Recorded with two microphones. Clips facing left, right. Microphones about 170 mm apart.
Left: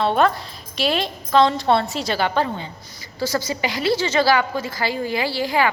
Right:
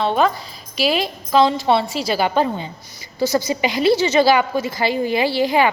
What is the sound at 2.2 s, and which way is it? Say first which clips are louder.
A woman's voice: right 3 dB; 15° right (ahead or behind).